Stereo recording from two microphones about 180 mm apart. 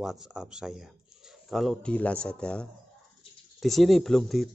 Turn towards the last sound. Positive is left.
turn(degrees=0)  # may be behind; listen again after turning